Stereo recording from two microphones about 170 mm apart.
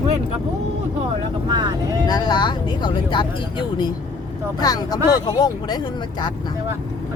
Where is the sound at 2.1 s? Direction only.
25° left (ahead or behind).